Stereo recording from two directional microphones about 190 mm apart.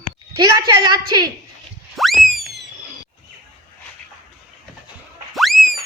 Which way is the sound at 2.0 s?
Centre (ahead or behind).